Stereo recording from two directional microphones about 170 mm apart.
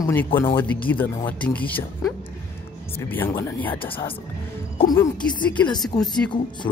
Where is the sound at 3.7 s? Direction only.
30° left (ahead or behind).